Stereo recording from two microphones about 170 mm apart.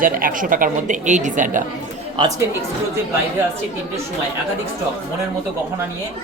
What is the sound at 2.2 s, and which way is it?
Speech, 25° right (ahead or behind).